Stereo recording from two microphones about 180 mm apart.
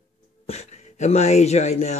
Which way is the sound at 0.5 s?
40° left (ahead or behind).